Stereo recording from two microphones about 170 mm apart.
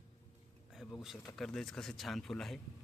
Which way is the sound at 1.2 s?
Centre (ahead or behind).